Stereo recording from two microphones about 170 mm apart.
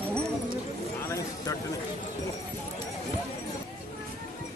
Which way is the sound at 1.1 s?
15° left (ahead or behind).